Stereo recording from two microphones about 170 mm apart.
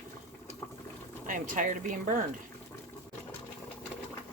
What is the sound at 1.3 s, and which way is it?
Speech, 50° right (ahead or behind).